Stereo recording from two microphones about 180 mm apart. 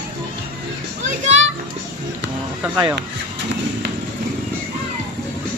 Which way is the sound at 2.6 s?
10° right (ahead or behind).